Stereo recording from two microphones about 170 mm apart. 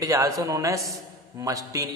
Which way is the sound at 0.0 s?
20° right (ahead or behind).